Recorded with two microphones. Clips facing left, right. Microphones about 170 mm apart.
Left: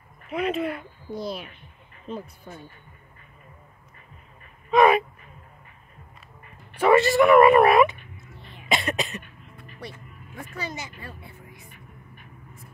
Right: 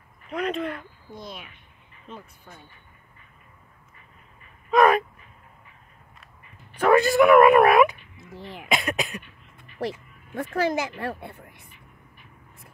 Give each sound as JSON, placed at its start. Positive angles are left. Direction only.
{"t": 0.3, "sound": "speech", "side_deg": 5}
{"t": 1.1, "sound": "speech", "side_deg": 35}
{"t": 4.6, "sound": "a sound", "side_deg": 0}
{"t": 6.8, "sound": "speech", "side_deg": 0}
{"t": 8.3, "sound": "throat clearing", "side_deg": -90}
{"t": 8.6, "sound": "cough", "side_deg": 0}
{"t": 9.8, "sound": "speech", "side_deg": -75}